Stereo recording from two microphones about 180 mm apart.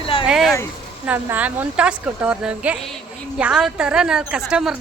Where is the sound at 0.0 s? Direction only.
30° left (ahead or behind).